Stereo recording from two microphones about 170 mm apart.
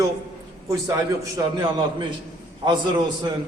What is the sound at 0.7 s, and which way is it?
Speech, 20° right (ahead or behind).